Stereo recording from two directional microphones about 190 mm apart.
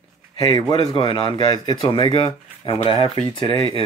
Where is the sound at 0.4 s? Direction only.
20° left (ahead or behind).